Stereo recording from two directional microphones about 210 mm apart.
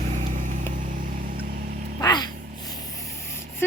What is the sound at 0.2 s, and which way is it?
Vehicle, 35° right (ahead or behind).